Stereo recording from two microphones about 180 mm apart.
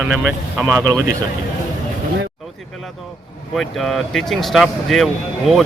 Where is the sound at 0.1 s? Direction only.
5° right (ahead or behind).